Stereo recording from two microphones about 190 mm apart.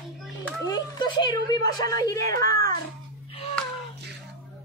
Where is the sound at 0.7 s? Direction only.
25° left (ahead or behind).